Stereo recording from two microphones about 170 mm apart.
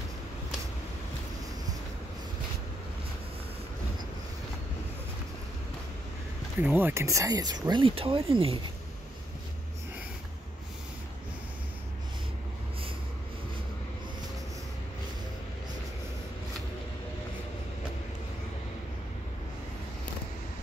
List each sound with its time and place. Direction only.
6.6 s speech: 10° right (ahead or behind); by 8.5 s 30° right (ahead or behind)